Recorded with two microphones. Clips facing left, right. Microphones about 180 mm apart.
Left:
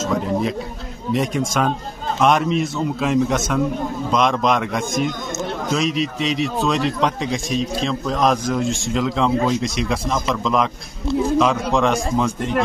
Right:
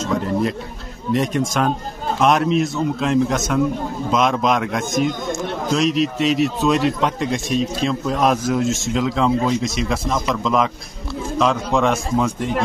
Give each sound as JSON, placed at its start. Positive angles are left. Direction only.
{"t": 1.1, "sound": "a man's voice", "side_deg": 0}